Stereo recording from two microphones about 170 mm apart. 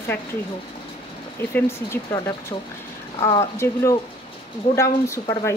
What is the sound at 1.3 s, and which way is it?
A woman's voice, 15° left (ahead or behind).